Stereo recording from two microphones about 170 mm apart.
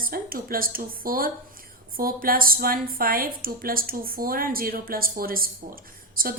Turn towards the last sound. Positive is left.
turn(degrees=-55)  # may be behind; listen again after turning